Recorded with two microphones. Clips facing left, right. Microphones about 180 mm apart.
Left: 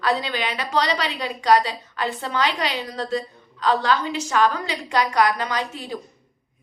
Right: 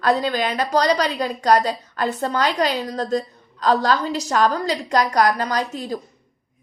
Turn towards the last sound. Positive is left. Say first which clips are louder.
# right 4 dB
turn(degrees=-40)  # may be behind; listen again after turning